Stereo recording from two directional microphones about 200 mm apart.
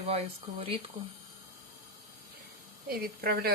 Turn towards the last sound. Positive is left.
turn(degrees=-50)  # may be behind; listen again after turning